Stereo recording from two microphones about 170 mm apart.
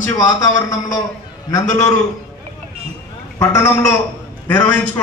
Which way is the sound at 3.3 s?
15° left (ahead or behind).